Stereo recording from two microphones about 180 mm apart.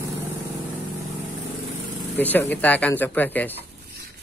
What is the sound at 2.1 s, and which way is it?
Speech, 10° left (ahead or behind).